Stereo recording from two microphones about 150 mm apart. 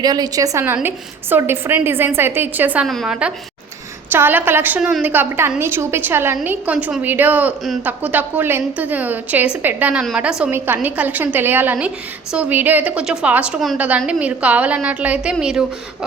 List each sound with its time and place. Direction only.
0.0 s a woman's voice: 25° right (ahead or behind)
2.8 s a woman's voice: centre (ahead or behind)